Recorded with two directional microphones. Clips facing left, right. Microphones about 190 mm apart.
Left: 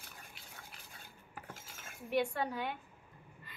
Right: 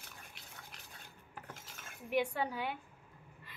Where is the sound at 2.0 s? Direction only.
10° right (ahead or behind).